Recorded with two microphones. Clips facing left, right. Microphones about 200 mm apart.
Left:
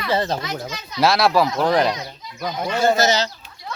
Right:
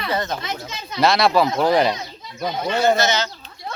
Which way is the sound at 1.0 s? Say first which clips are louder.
Even; centre (ahead or behind).